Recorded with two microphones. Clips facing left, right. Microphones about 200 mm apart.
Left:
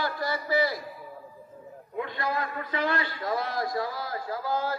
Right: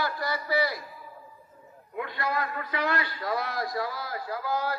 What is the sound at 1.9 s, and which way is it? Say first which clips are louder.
A man's voice: even; 25° left (ahead or behind).